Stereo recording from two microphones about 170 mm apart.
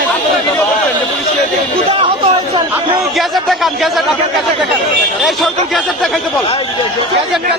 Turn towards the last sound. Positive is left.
turn(degrees=0)  # may be behind; listen again after turning